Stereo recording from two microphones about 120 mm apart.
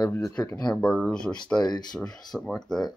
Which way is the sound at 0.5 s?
10° left (ahead or behind).